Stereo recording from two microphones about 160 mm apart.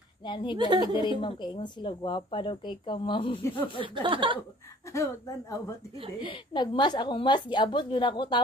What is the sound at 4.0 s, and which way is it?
Speech, 30° right (ahead or behind).